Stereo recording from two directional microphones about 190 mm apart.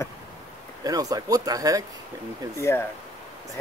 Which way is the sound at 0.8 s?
20° right (ahead or behind).